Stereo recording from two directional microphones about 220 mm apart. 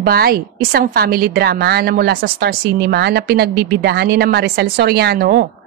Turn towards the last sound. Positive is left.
turn(degrees=-45)  # may be behind; listen again after turning